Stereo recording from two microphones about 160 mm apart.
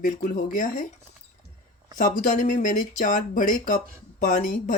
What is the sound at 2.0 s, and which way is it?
Speech, 55° left (ahead or behind).